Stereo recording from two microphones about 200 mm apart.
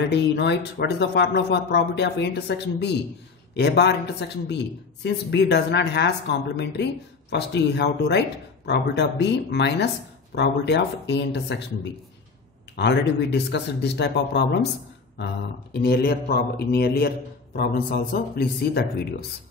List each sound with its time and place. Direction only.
0.1 s speech: 60° left (ahead or behind)
15.7 s a man's voice: 50° left (ahead or behind)